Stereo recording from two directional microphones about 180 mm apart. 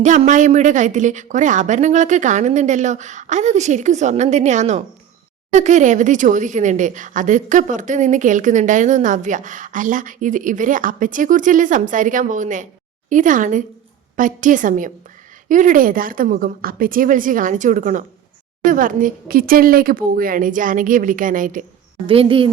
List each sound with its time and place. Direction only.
0.0 s a woman's voice: 40° right (ahead or behind)
22.0 s a woman's voice: 30° right (ahead or behind)